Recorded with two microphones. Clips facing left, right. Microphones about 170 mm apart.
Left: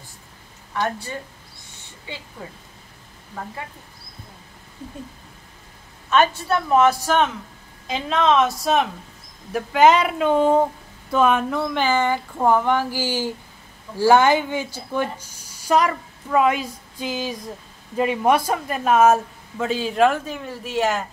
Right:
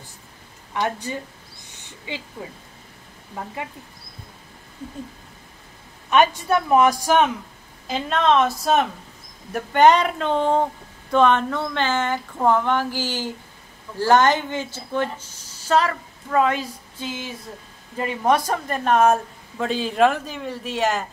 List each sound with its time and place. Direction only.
0.7 s speech: 15° right (ahead or behind)
6.0 s speech: 15° right (ahead or behind)
7.8 s a woman's voice: centre (ahead or behind)
17.9 s speech: 15° left (ahead or behind)